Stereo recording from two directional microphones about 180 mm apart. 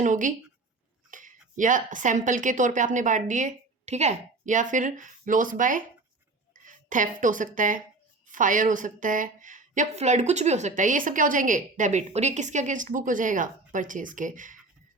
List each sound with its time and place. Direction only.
0.0 s a woman's voice: 45° right (ahead or behind)